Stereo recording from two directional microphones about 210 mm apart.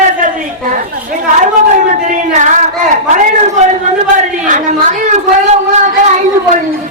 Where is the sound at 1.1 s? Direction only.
35° right (ahead or behind).